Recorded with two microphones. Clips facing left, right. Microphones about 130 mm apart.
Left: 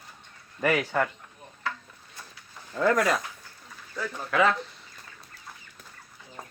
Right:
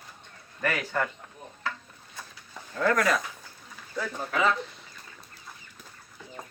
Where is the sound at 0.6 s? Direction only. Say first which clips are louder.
Left 4 dB; 20° left (ahead or behind).